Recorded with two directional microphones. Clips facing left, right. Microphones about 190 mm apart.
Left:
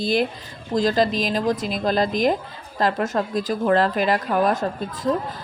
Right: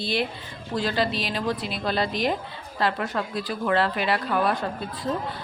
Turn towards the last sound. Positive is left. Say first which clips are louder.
# left 4 dB
turn(degrees=45)  # may be behind; listen again after turning